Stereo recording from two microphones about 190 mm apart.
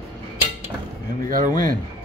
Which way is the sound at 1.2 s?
45° right (ahead or behind).